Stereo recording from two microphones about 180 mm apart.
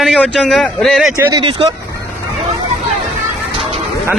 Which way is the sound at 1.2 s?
20° right (ahead or behind).